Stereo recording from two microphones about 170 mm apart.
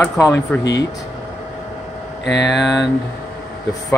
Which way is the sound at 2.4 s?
Centre (ahead or behind).